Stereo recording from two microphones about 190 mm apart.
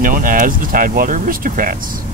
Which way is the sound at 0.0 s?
45° right (ahead or behind).